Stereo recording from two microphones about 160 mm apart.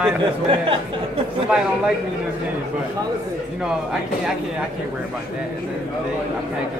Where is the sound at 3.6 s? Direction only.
5° right (ahead or behind).